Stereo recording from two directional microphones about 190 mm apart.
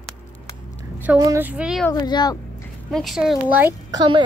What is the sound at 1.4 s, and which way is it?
Speech, 5° right (ahead or behind).